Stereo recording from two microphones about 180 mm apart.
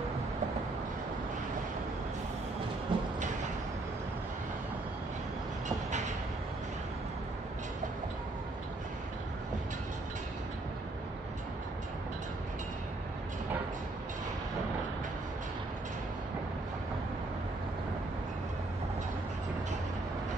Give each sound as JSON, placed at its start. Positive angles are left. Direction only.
{"t": 2.9, "sound": "train", "side_deg": -25}
{"t": 5.7, "sound": "vehicle", "side_deg": -40}